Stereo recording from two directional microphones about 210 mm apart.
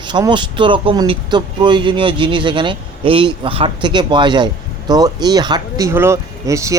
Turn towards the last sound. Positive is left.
turn(degrees=-15)  # may be behind; listen again after turning